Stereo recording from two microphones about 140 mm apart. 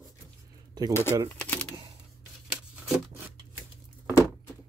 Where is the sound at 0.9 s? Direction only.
15° left (ahead or behind).